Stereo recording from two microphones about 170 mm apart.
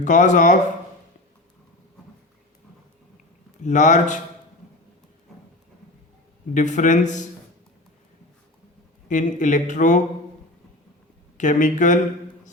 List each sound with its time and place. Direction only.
0.0 s speech: 45° left (ahead or behind)
3.6 s speech: 45° left (ahead or behind)
6.5 s speech: 45° left (ahead or behind)
9.0 s speech: 45° left (ahead or behind)
11.3 s speech: 50° left (ahead or behind)